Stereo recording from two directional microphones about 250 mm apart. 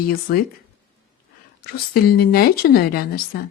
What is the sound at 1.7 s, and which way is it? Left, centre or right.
Speech, left.